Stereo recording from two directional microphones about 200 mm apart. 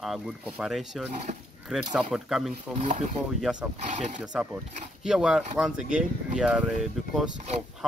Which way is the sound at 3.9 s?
35° right (ahead or behind).